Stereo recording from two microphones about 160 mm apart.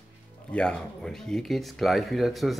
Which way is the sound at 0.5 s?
5° left (ahead or behind).